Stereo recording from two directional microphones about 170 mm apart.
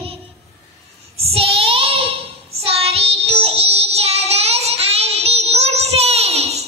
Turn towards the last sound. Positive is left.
turn(degrees=-40)  # may be behind; listen again after turning